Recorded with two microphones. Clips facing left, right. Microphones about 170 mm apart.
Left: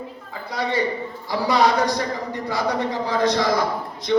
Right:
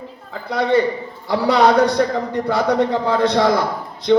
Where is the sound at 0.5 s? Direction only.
55° right (ahead or behind).